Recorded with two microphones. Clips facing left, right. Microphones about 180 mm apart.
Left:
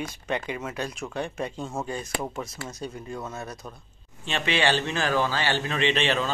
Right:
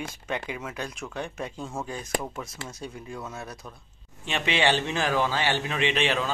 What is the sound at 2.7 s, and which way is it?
Speech, centre (ahead or behind).